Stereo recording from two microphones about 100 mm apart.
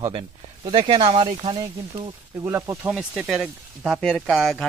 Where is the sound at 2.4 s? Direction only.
30° right (ahead or behind).